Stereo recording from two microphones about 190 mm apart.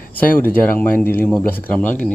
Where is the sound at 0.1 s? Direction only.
10° left (ahead or behind).